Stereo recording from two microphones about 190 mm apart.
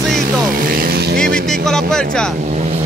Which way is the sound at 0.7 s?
50° right (ahead or behind).